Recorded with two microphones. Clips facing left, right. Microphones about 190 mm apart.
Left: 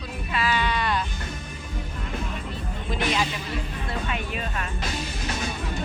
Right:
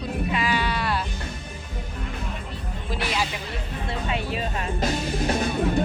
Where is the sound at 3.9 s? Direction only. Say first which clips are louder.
Right 3 dB; 30° right (ahead or behind).